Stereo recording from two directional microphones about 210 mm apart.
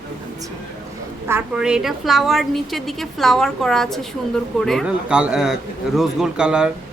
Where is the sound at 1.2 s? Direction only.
5° right (ahead or behind).